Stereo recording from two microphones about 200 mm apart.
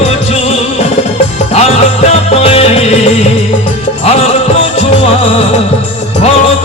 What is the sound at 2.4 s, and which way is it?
Music, 30° left (ahead or behind).